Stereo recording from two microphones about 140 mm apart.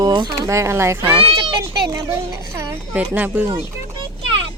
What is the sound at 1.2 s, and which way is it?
Speech, 40° right (ahead or behind).